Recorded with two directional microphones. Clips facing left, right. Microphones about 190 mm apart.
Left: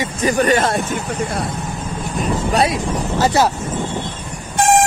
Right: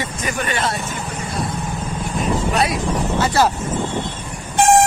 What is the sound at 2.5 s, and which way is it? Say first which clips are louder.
Speech: left 2 dB; 30° left (ahead or behind).